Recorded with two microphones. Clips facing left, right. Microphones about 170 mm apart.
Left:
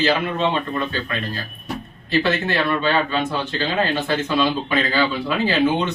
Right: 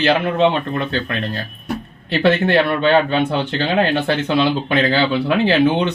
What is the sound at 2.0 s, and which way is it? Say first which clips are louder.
A man's voice: right 5 dB; 60° right (ahead or behind).